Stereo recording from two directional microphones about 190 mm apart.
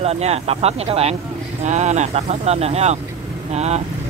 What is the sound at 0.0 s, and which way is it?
Speech, 35° right (ahead or behind).